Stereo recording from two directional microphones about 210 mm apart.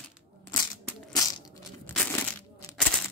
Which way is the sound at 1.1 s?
15° left (ahead or behind).